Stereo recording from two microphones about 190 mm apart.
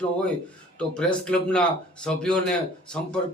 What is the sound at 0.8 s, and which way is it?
A man's voice, 5° left (ahead or behind).